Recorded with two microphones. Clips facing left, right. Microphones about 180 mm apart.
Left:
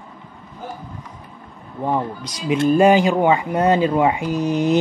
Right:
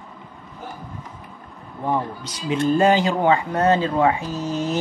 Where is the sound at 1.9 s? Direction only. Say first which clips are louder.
Left 1 dB; 15° left (ahead or behind).